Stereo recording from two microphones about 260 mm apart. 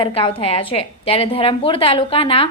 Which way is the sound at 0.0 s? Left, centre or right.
Left.